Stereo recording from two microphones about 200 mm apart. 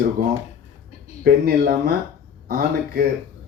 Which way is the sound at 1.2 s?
50° right (ahead or behind).